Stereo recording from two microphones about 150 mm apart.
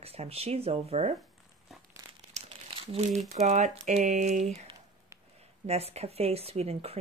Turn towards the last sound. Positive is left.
turn(degrees=-40)  # may be behind; listen again after turning